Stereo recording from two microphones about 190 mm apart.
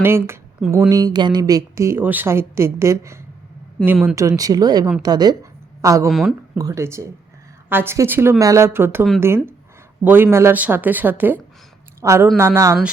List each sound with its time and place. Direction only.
0.0 s a woman's voice: 10° right (ahead or behind)
6.1 s speech: centre (ahead or behind)
6.6 s a woman's voice: 15° right (ahead or behind)